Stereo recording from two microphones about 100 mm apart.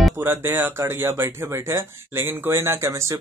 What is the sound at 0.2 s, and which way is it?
Speech, 20° right (ahead or behind).